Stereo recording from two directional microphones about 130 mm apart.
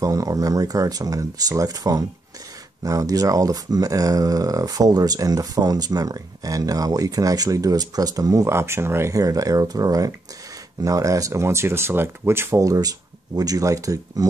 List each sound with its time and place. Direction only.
0.0 s speech: 25° right (ahead or behind)